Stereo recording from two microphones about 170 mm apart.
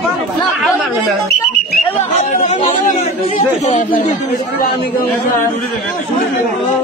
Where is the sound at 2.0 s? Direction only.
45° left (ahead or behind).